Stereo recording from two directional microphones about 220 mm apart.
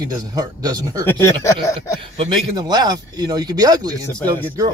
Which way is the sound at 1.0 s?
10° left (ahead or behind).